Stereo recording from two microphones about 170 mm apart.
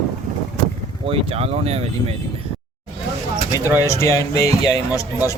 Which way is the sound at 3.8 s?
15° left (ahead or behind).